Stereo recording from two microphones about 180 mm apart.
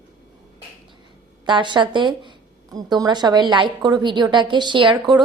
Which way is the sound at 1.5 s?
25° right (ahead or behind).